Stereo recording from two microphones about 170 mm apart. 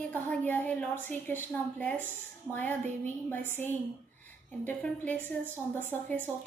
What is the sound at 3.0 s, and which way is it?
A woman's voice, 10° left (ahead or behind).